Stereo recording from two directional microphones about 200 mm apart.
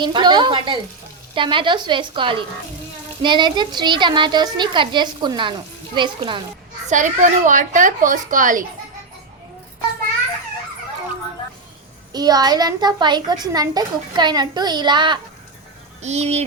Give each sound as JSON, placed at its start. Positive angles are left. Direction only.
{"t": 0.0, "sound": "a woman's voice", "side_deg": -20}
{"t": 6.8, "sound": "a child's voice", "side_deg": -40}
{"t": 12.1, "sound": "a woman's voice", "side_deg": -20}
{"t": 16.0, "sound": "speech", "side_deg": -35}